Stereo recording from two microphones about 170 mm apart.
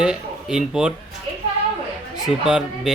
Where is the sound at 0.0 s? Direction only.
5° right (ahead or behind).